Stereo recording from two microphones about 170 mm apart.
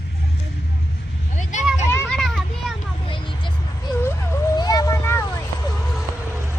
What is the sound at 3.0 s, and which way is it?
Vehicle, 30° left (ahead or behind).